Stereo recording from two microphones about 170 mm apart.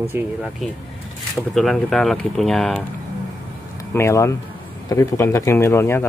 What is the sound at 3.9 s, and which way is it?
Speech, 15° left (ahead or behind).